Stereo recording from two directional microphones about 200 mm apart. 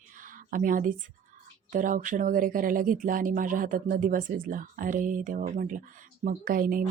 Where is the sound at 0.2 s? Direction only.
40° right (ahead or behind).